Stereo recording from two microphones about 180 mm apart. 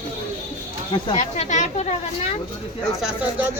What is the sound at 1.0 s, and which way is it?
Speech, 40° left (ahead or behind).